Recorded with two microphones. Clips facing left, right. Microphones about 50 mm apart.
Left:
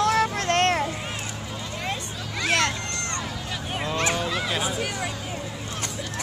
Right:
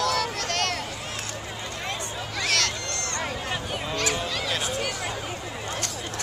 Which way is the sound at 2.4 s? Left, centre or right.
Left.